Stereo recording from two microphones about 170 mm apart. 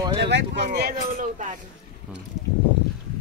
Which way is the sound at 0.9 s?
50° right (ahead or behind).